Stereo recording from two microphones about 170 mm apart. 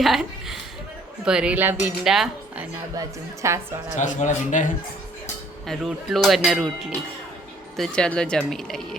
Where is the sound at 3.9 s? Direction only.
45° left (ahead or behind).